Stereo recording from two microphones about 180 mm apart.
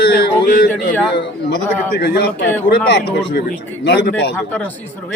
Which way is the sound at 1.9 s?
65° left (ahead or behind).